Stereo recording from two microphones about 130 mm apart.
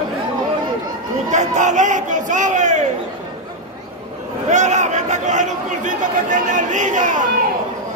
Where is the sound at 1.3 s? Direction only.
70° right (ahead or behind).